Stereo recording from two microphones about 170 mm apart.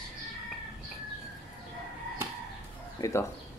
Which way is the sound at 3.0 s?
15° left (ahead or behind).